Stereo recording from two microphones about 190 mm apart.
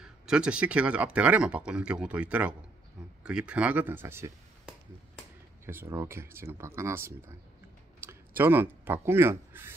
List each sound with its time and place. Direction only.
0.0 s speech: 5° right (ahead or behind)
8.4 s speech: 10° right (ahead or behind)